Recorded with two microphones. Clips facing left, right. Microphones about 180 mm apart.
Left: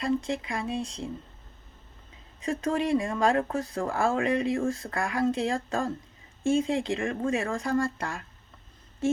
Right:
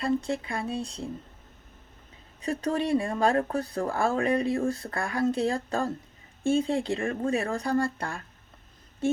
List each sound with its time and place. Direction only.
0.0 s speech: 35° right (ahead or behind)
2.4 s speech: 35° right (ahead or behind)